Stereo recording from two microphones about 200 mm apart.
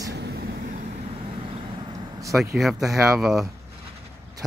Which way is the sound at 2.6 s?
Centre (ahead or behind).